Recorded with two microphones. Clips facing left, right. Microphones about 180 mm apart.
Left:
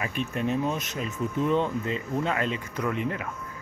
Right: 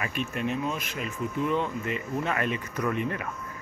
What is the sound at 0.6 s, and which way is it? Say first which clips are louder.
Speech: left 3 dB; 30° left (ahead or behind).